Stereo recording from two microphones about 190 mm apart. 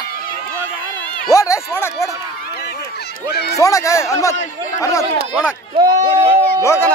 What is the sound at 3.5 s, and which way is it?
Speech, 15° left (ahead or behind).